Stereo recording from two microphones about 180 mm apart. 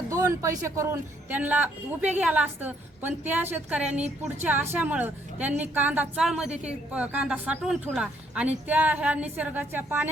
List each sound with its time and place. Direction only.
0.1 s a woman's voice: 20° right (ahead or behind)
4.0 s a woman's voice: 40° right (ahead or behind)
4.4 s a woman's voice: 10° right (ahead or behind)